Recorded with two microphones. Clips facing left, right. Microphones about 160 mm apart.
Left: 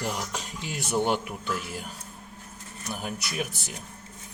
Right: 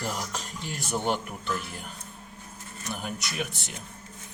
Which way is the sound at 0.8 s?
10° left (ahead or behind).